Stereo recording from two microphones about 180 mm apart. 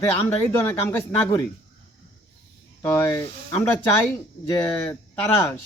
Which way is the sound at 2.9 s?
15° left (ahead or behind).